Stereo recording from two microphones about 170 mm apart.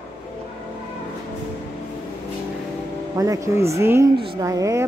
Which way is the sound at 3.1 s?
20° right (ahead or behind).